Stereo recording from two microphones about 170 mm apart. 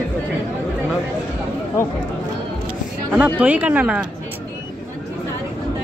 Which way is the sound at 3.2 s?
10° right (ahead or behind).